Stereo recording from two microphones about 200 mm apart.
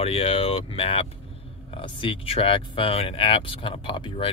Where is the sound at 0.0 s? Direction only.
30° left (ahead or behind).